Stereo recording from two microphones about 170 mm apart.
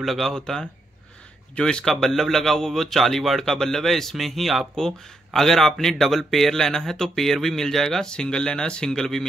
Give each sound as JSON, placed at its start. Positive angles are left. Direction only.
{"t": 0.0, "sound": "a man's voice", "side_deg": 0}